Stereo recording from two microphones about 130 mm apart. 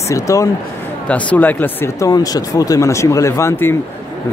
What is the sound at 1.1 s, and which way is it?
Speech, 10° left (ahead or behind).